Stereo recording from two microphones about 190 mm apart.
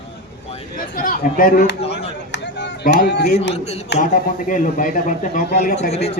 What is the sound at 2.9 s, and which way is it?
Speech, 65° left (ahead or behind).